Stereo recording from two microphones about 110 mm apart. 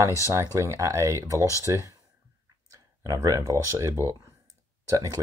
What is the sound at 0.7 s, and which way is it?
Speech, 30° right (ahead or behind).